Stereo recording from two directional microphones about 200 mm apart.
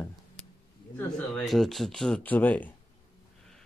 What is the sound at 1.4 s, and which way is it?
Speech, centre (ahead or behind).